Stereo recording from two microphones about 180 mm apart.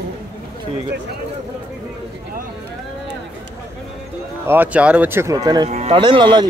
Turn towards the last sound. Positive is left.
turn(degrees=-25)  # may be behind; listen again after turning